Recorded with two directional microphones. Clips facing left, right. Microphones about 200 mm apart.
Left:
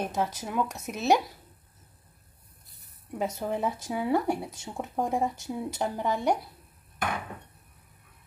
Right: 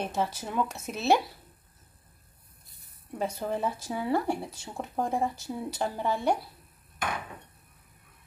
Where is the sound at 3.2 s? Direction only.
15° left (ahead or behind).